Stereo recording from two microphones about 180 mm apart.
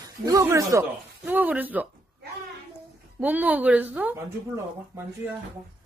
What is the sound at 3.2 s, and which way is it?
Speech, 10° right (ahead or behind).